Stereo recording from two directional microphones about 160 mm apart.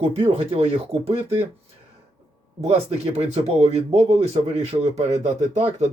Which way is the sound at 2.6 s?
40° right (ahead or behind).